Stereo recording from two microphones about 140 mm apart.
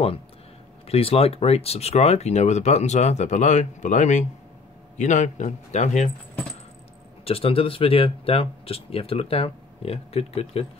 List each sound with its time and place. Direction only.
0.8 s a man's voice: 45° left (ahead or behind)
7.2 s speech: 40° left (ahead or behind)